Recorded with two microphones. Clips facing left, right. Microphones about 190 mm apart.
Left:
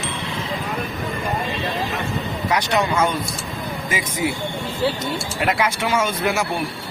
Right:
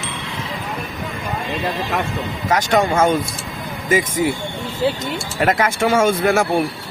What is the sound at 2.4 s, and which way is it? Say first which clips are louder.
Speech: right 4 dB; 45° right (ahead or behind).